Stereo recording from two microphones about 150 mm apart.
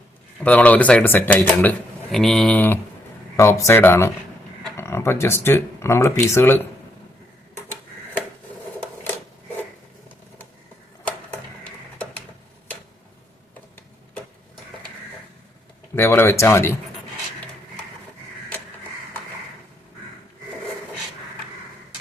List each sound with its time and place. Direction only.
0.4 s speech: 10° left (ahead or behind)
11.6 s a sound: 5° left (ahead or behind)
16.0 s speech: 15° left (ahead or behind)